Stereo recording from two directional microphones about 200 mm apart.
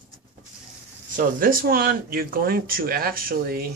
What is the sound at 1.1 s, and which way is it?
Speech, 45° right (ahead or behind).